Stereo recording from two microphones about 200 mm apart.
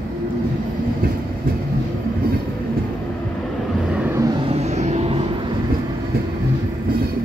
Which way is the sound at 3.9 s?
10° right (ahead or behind).